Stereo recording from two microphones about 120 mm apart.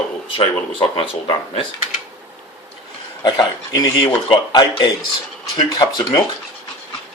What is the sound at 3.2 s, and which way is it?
Speech, 35° left (ahead or behind).